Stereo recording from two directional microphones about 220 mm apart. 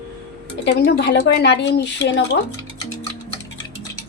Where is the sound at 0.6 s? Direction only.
50° left (ahead or behind).